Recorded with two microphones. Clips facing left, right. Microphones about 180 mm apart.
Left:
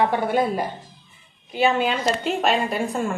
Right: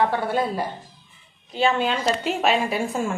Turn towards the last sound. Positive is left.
turn(degrees=0)  # may be behind; listen again after turning